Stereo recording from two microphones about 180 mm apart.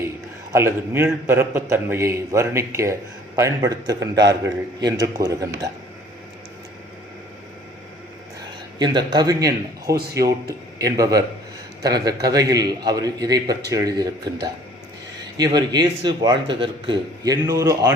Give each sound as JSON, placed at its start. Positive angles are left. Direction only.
{"t": 0.5, "sound": "a man's voice", "side_deg": -15}
{"t": 8.8, "sound": "a man's voice", "side_deg": -25}
{"t": 15.4, "sound": "a man's voice", "side_deg": -20}